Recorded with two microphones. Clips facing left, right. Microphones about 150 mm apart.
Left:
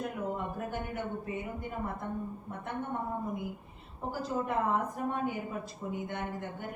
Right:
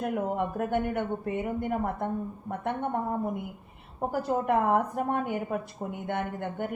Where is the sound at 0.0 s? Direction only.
65° right (ahead or behind).